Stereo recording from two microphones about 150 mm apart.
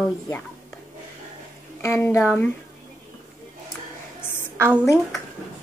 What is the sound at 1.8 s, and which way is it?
Speech, 15° left (ahead or behind).